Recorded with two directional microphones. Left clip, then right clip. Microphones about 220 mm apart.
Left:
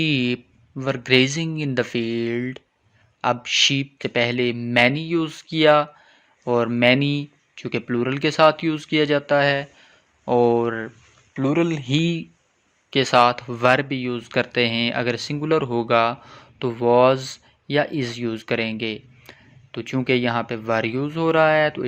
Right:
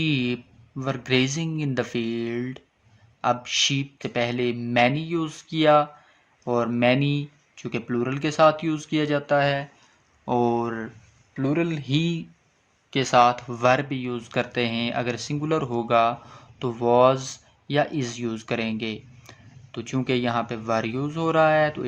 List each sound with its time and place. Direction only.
0.0 s speech: 20° left (ahead or behind)